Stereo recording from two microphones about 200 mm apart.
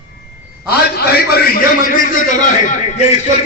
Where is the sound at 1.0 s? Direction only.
50° left (ahead or behind).